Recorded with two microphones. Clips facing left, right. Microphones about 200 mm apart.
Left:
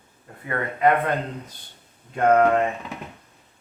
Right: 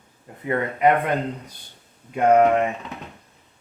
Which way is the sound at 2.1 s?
15° right (ahead or behind).